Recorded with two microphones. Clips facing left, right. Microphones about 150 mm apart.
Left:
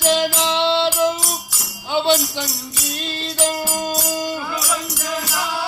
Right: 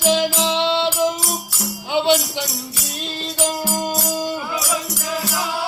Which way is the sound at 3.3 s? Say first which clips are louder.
Even; 5° right (ahead or behind).